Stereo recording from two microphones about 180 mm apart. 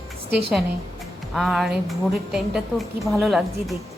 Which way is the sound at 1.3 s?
Centre (ahead or behind).